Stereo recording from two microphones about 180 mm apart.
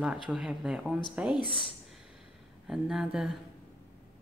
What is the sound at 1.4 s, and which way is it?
Speech, 25° left (ahead or behind).